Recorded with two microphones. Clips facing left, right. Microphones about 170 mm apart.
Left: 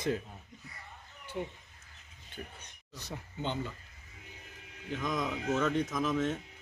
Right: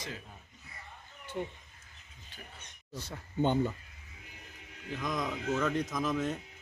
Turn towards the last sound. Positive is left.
turn(degrees=0)  # may be behind; listen again after turning